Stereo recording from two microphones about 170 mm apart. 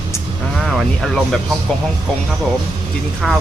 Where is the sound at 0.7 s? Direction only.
Centre (ahead or behind).